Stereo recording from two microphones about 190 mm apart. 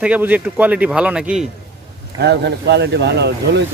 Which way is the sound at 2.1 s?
60° right (ahead or behind).